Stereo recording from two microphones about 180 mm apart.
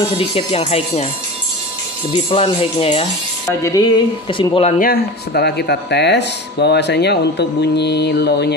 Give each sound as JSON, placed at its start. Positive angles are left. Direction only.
{"t": 0.1, "sound": "speech", "side_deg": 30}
{"t": 2.1, "sound": "speech", "side_deg": 30}
{"t": 3.6, "sound": "speech", "side_deg": 20}
{"t": 4.7, "sound": "speech", "side_deg": 55}